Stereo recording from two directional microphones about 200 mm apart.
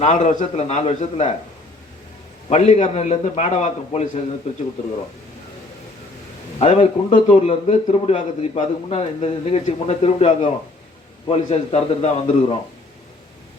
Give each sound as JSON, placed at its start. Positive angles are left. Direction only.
{"t": 0.0, "sound": "a man's voice", "side_deg": 40}
{"t": 2.5, "sound": "a man's voice", "side_deg": 35}
{"t": 6.6, "sound": "a man's voice", "side_deg": 30}